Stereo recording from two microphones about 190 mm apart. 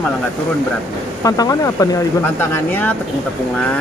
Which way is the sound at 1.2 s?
20° left (ahead or behind).